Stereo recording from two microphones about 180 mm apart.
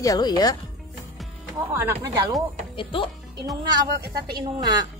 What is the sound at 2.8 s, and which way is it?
Speech, 30° left (ahead or behind).